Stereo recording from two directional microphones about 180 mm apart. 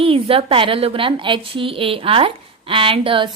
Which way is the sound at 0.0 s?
30° right (ahead or behind).